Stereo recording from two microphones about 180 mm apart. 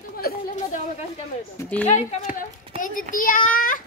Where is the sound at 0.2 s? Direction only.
55° left (ahead or behind).